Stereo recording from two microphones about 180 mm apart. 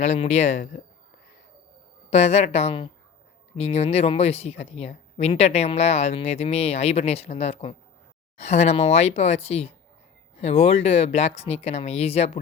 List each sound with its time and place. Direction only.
0.0 s speech: 40° left (ahead or behind)
2.0 s speech: 35° left (ahead or behind)